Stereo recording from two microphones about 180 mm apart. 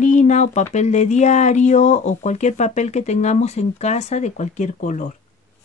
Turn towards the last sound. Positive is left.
turn(degrees=45)  # may be behind; listen again after turning